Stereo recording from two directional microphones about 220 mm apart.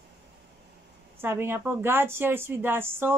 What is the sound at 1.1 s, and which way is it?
A woman's voice, 10° right (ahead or behind).